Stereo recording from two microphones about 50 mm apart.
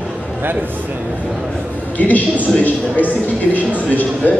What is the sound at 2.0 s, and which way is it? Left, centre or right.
Speech, left.